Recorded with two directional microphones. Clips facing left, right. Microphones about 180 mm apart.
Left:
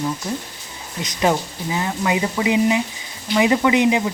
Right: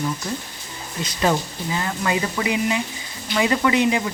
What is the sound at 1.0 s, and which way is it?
Speech, 15° left (ahead or behind).